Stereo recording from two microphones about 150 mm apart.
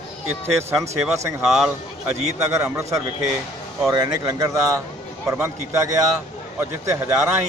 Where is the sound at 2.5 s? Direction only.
15° right (ahead or behind).